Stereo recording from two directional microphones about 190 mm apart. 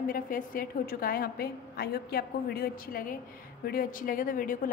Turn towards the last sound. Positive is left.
turn(degrees=45)  # may be behind; listen again after turning